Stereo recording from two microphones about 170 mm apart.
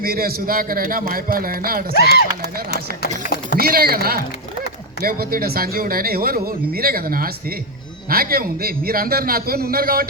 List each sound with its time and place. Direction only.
0.0 s speech: 60° right (ahead or behind)
1.9 s speech: 70° left (ahead or behind)
3.6 s speech: 65° right (ahead or behind)